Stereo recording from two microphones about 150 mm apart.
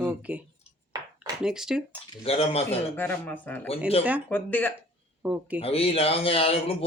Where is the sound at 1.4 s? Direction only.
5° right (ahead or behind).